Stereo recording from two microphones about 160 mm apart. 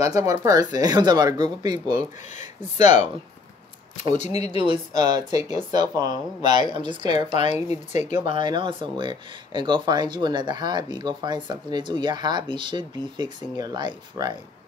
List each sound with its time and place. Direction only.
0.0 s speech: 20° right (ahead or behind)
2.3 s speech: 45° left (ahead or behind)
4.1 s speech: 45° left (ahead or behind)
4.6 s speech: 25° right (ahead or behind)
7.7 s speech: 45° left (ahead or behind)
8.3 s speech: 30° right (ahead or behind)